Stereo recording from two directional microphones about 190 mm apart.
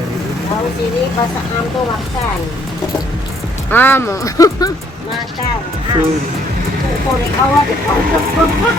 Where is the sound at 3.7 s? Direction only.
10° left (ahead or behind).